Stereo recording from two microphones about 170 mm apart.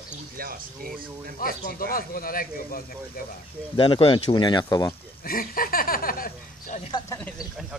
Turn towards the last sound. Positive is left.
turn(degrees=55)  # may be behind; listen again after turning